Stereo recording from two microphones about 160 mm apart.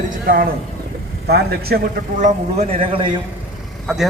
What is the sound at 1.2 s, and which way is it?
Speech, 85° right.